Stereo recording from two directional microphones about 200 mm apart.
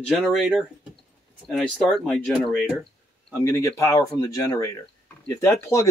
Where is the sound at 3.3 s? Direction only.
15° left (ahead or behind).